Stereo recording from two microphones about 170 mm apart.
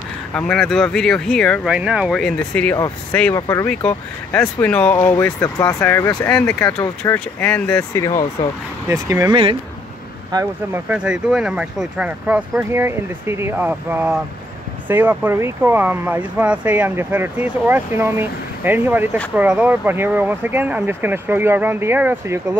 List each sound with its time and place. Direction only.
0.3 s speech: 5° left (ahead or behind)
3.3 s speech: 20° left (ahead or behind)
3.6 s speech: 10° left (ahead or behind)
4.9 s speech: 20° left (ahead or behind)
8.8 s speech: 20° right (ahead or behind)